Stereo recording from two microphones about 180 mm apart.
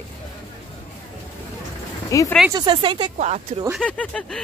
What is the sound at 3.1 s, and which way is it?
Speech, 40° right (ahead or behind).